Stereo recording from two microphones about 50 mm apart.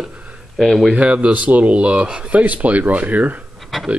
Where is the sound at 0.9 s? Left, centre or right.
Right.